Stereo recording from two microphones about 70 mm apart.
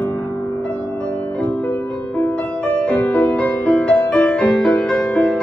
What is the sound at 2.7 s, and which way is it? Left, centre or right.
Music, centre.